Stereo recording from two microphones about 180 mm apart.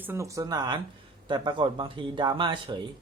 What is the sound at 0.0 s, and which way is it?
Speech, 15° right (ahead or behind).